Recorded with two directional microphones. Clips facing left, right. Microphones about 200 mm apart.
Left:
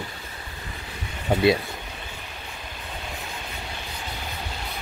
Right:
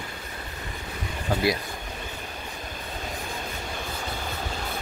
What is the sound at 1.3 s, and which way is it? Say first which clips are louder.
Speech: left 4 dB; 20° left (ahead or behind).